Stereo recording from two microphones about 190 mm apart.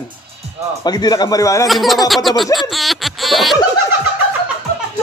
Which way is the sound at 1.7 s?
Centre (ahead or behind).